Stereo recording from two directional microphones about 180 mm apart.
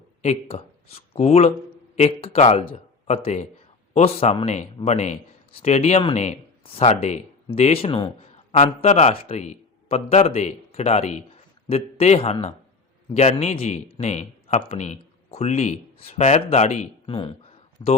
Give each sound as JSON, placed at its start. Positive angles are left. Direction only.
{"t": 0.2, "sound": "a man's voice", "side_deg": 40}